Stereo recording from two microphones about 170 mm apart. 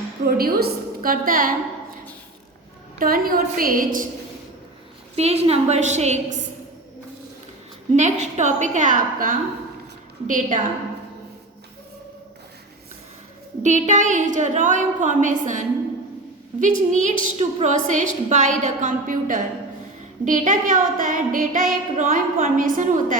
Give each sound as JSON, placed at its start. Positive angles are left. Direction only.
{"t": 0.3, "sound": "a woman's voice", "side_deg": -60}
{"t": 3.0, "sound": "a woman's voice", "side_deg": -60}
{"t": 5.1, "sound": "a woman's voice", "side_deg": -35}
{"t": 7.9, "sound": "a woman's voice", "side_deg": -45}
{"t": 13.6, "sound": "a woman's voice", "side_deg": -45}